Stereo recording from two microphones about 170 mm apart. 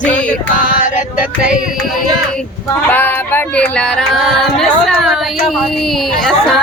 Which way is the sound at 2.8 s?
10° left (ahead or behind).